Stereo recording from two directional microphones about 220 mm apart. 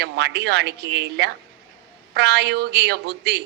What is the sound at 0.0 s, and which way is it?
A woman's voice, 50° right (ahead or behind).